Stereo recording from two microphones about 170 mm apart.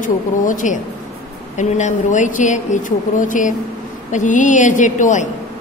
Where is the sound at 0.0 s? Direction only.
50° left (ahead or behind).